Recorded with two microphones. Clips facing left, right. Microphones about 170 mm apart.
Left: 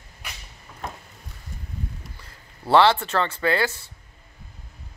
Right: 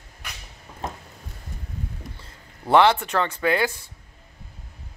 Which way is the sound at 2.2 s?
15° right (ahead or behind).